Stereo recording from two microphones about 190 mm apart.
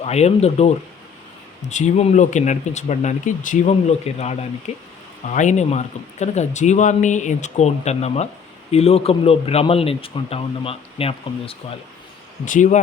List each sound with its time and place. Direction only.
0.0 s speech: 35° left (ahead or behind)
1.7 s speech: 35° left (ahead or behind)
12.5 s speech: 40° left (ahead or behind)